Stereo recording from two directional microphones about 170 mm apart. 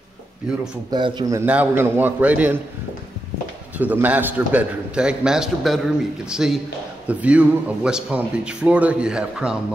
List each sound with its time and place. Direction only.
0.9 s a man's voice: 25° right (ahead or behind); by 2.6 s 10° right (ahead or behind)
3.7 s a man's voice: 10° right (ahead or behind)